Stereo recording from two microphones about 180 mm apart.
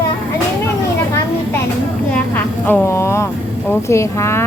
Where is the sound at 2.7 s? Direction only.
15° left (ahead or behind).